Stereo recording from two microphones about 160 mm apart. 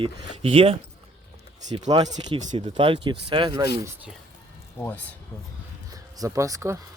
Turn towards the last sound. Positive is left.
turn(degrees=-20)  # may be behind; listen again after turning